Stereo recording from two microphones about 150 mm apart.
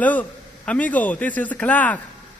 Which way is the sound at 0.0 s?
10° left (ahead or behind).